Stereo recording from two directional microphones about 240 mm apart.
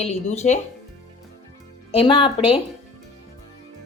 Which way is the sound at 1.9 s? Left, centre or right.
Left.